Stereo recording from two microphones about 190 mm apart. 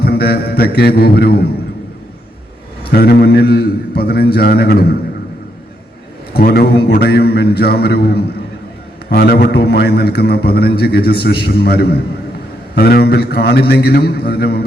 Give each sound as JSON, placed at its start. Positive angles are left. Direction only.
{"t": 0.0, "sound": "mantra", "side_deg": 55}
{"t": 2.8, "sound": "a man's voice", "side_deg": 55}
{"t": 6.3, "sound": "a man's voice", "side_deg": 55}